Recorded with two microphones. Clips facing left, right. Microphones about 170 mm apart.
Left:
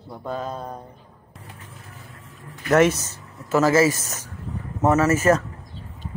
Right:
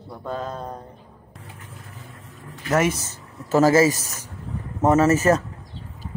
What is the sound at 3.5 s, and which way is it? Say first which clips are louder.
Speech: right 1 dB; 40° right (ahead or behind).